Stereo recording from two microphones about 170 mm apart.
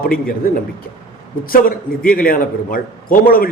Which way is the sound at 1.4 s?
55° left (ahead or behind).